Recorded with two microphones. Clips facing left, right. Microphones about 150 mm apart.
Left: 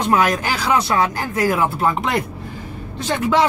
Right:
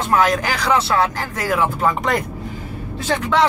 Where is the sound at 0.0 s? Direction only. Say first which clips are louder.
Even; 20° left (ahead or behind); by 2.2 s centre (ahead or behind).